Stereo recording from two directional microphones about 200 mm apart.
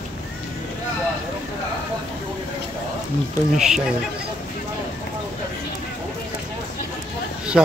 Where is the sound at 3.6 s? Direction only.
5° right (ahead or behind).